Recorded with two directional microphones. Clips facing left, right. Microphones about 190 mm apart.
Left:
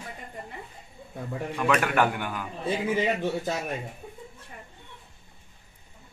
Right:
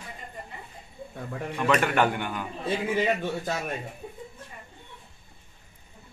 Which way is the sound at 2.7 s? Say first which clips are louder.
Even; 15° left (ahead or behind).